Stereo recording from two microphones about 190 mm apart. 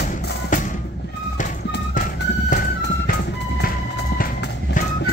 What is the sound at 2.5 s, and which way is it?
Music, 45° left (ahead or behind).